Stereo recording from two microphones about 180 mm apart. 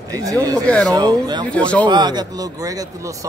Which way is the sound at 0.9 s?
20° right (ahead or behind).